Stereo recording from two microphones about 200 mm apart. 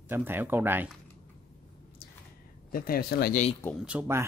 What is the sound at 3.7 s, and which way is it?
Speech, 5° right (ahead or behind).